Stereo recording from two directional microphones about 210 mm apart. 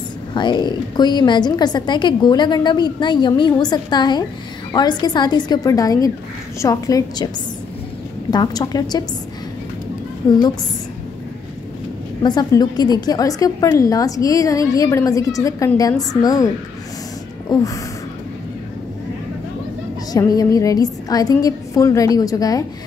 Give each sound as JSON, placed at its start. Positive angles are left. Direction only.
{"t": 0.3, "sound": "a woman's voice", "side_deg": 20}
{"t": 8.3, "sound": "a woman's voice", "side_deg": 20}
{"t": 12.2, "sound": "a woman's voice", "side_deg": 20}
{"t": 20.1, "sound": "a woman's voice", "side_deg": 15}